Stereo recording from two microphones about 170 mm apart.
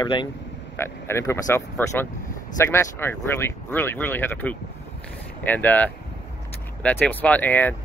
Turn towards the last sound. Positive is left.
turn(degrees=10)  # may be behind; listen again after turning